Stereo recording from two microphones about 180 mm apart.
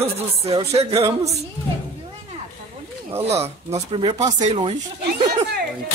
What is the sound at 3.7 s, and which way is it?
Speech, 30° right (ahead or behind).